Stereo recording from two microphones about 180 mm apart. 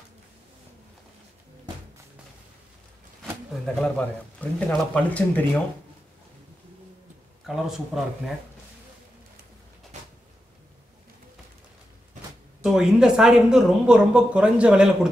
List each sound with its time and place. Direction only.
3.6 s speech: 5° left (ahead or behind)
7.4 s speech: centre (ahead or behind)
9.9 s a sound: 40° right (ahead or behind)
12.6 s speech: 5° right (ahead or behind)